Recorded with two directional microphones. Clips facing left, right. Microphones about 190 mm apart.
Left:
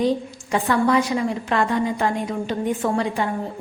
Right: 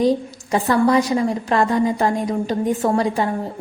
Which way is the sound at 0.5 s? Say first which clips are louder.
Right 3 dB; 40° right (ahead or behind).